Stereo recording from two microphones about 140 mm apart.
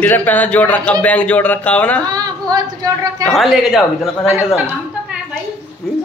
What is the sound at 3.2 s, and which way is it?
Speech, centre (ahead or behind).